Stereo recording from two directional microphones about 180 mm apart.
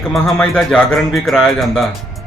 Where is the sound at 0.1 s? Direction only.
5° left (ahead or behind).